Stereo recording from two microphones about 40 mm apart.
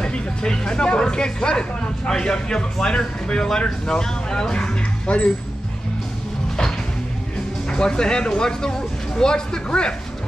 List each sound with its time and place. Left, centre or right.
0.0 s speech: left
5.0 s speech: left
7.7 s speech: centre